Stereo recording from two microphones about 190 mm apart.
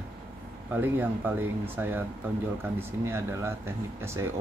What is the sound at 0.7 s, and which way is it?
Speech, 10° right (ahead or behind).